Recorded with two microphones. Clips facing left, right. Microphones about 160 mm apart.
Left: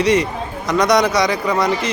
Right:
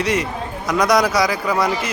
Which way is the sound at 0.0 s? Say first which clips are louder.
Left 4 dB; centre (ahead or behind).